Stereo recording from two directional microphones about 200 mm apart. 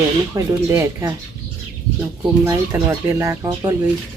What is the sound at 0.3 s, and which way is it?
Speech, 15° right (ahead or behind).